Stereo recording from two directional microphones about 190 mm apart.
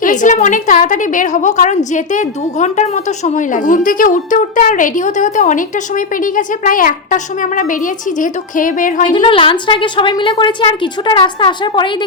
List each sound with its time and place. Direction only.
0.0 s a woman's voice: 40° left (ahead or behind)
9.1 s a woman's voice: 25° left (ahead or behind)